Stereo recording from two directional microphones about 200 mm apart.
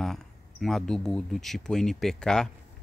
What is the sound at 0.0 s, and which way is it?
Speech, centre (ahead or behind).